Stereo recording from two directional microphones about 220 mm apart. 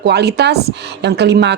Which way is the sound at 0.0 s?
50° right (ahead or behind).